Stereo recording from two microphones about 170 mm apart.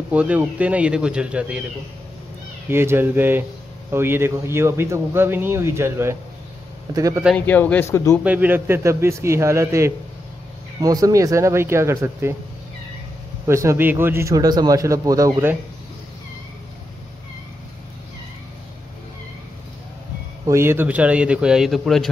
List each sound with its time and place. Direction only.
0.1 s speech: 10° right (ahead or behind)
2.7 s a man's voice: 15° right (ahead or behind)
7.3 s speech: 10° left (ahead or behind)
8.2 s speech: 10° right (ahead or behind)
13.5 s a man's voice: 15° right (ahead or behind)
20.4 s speech: 15° right (ahead or behind); by 22.1 s centre (ahead or behind)